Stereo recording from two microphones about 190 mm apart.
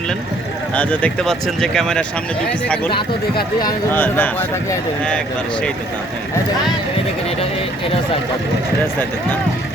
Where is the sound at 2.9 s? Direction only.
25° left (ahead or behind).